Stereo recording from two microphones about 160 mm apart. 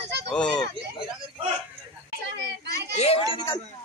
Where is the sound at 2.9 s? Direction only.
40° left (ahead or behind).